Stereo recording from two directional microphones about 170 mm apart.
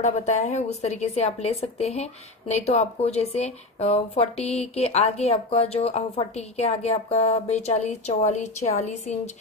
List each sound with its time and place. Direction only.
0.0 s a woman's voice: 40° left (ahead or behind)